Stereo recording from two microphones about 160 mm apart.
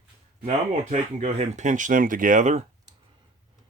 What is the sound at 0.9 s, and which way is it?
Speech, 45° right (ahead or behind).